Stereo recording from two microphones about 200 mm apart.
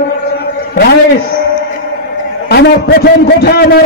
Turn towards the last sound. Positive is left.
turn(degrees=55)  # may be behind; listen again after turning